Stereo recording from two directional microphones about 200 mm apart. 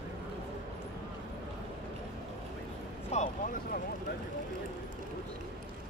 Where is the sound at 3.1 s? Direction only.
35° left (ahead or behind).